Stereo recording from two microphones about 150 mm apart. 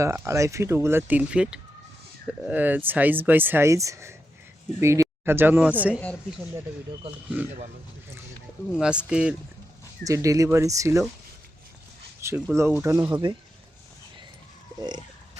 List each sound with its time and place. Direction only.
0.0 s speech: 20° right (ahead or behind)
8.7 s speech: 5° right (ahead or behind)
10.0 s speech: 20° right (ahead or behind)
12.5 s speech: 15° right (ahead or behind)
14.8 s speech: 30° right (ahead or behind)